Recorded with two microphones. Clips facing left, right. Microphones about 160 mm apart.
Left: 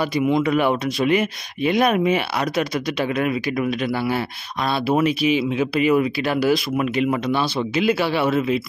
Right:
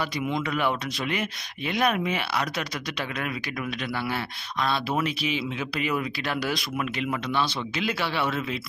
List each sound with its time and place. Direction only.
0.4 s speech: 15° left (ahead or behind)
5.0 s speech: 10° left (ahead or behind)